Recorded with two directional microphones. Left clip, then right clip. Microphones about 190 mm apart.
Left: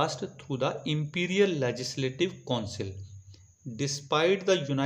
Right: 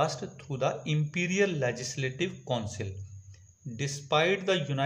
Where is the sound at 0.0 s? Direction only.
25° left (ahead or behind).